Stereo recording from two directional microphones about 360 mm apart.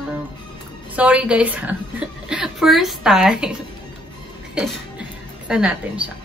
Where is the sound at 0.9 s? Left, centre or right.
Centre.